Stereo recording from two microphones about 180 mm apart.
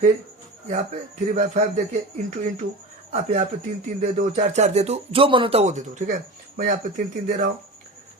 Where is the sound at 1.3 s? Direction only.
40° right (ahead or behind).